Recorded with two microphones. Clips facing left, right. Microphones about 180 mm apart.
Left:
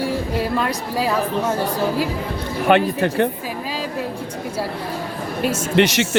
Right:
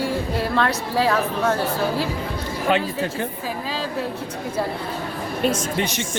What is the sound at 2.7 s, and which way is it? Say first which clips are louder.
Speech: left 6 dB; 60° left (ahead or behind).